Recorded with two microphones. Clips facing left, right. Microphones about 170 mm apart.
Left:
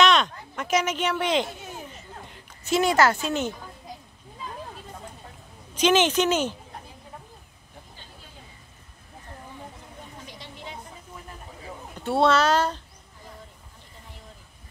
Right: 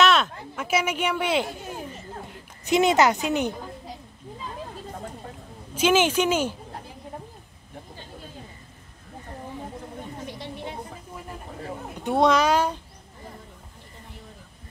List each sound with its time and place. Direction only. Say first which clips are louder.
0.0 s speech: even; 5° right (ahead or behind)
2.6 s a woman's voice: right 2 dB; 20° right (ahead or behind)
5.8 s a woman's voice: even; 10° right (ahead or behind)
10.2 s a sound: right 6 dB; 55° right (ahead or behind)
12.0 s a woman's voice: right 1 dB; 15° right (ahead or behind)